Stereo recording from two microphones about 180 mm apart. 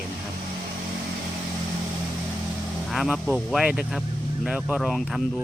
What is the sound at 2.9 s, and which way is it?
Speech, centre (ahead or behind).